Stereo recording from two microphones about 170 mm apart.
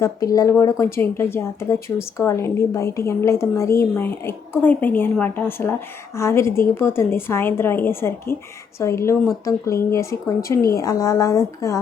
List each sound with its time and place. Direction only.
0.0 s a woman's voice: 20° left (ahead or behind)